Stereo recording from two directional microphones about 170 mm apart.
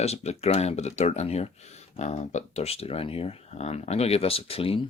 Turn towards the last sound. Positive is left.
turn(degrees=35)  # may be behind; listen again after turning